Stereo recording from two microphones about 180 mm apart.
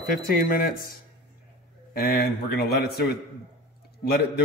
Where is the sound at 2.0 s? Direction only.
60° left (ahead or behind).